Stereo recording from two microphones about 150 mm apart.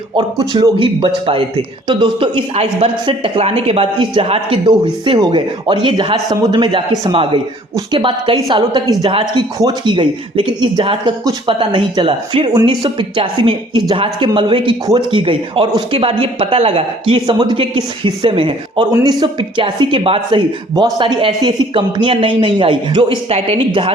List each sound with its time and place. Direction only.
0.3 s speech: 25° right (ahead or behind)